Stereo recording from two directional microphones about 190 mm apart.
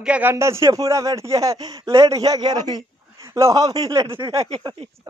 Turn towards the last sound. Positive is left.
turn(degrees=-25)  # may be behind; listen again after turning